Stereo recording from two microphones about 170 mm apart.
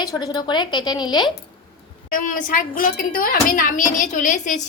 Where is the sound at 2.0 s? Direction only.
55° left (ahead or behind).